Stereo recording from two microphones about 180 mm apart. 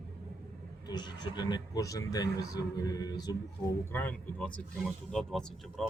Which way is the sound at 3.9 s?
10° left (ahead or behind).